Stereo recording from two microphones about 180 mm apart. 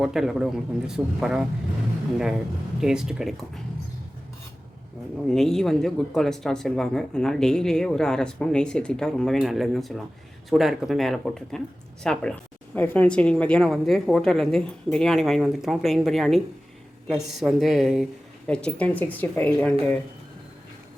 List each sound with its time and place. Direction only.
0.0 s speech: centre (ahead or behind)
2.8 s speech: 5° right (ahead or behind)
5.3 s speech: centre (ahead or behind)